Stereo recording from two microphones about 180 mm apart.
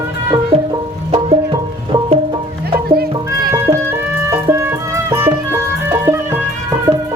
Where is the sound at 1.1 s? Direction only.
30° right (ahead or behind).